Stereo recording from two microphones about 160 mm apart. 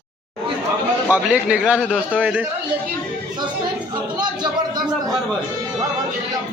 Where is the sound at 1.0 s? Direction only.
5° right (ahead or behind).